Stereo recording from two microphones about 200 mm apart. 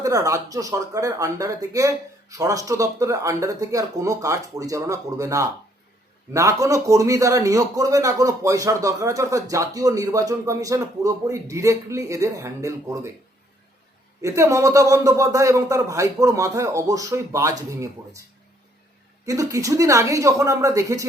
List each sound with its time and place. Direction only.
0.0 s a man's voice: 15° right (ahead or behind)
14.2 s a man's voice: 15° right (ahead or behind)
19.2 s a man's voice: 15° right (ahead or behind)